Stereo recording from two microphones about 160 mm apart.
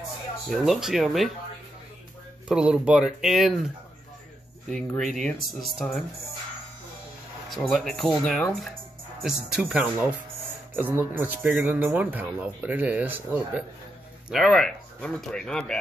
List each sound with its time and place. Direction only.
0.5 s speech: centre (ahead or behind)
2.4 s speech: 5° right (ahead or behind)
4.7 s speech: 5° left (ahead or behind)
7.5 s speech: centre (ahead or behind)
14.3 s speech: centre (ahead or behind)